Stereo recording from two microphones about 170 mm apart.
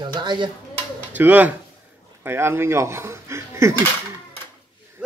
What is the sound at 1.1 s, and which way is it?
Speech, 10° right (ahead or behind).